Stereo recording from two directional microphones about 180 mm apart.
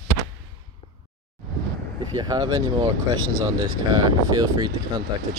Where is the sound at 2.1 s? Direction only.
20° right (ahead or behind).